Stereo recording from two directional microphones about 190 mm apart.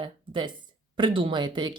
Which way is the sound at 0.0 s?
25° right (ahead or behind).